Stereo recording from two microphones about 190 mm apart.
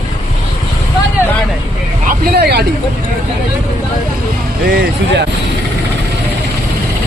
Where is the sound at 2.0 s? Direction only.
55° right (ahead or behind).